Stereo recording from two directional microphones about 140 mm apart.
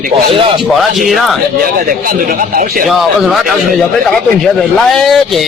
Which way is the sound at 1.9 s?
90° right.